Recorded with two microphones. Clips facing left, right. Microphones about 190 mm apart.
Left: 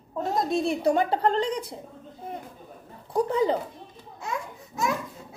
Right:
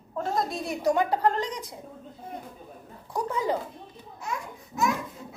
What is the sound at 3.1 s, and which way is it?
Speech, 25° left (ahead or behind).